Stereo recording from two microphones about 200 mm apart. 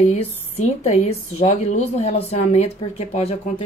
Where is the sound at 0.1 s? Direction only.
35° left (ahead or behind).